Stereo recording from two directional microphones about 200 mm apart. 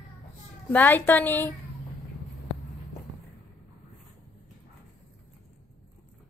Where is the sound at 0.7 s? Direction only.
10° left (ahead or behind).